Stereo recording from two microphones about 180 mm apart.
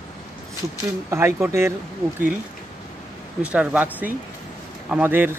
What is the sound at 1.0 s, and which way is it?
Speech, 15° right (ahead or behind).